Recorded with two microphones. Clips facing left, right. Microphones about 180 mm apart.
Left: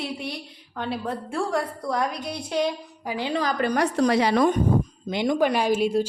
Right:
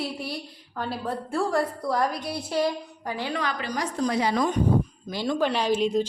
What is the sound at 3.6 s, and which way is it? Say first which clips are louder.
Speech: left 9 dB; 60° left (ahead or behind).